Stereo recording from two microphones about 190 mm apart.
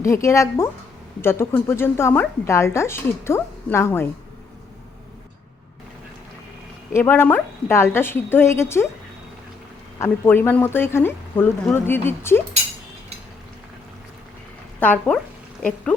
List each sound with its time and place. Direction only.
0.0 s a woman's voice: 15° left (ahead or behind)
6.9 s a woman's voice: 10° left (ahead or behind)
10.0 s a woman's voice: 10° left (ahead or behind)
14.8 s a woman's voice: 10° left (ahead or behind)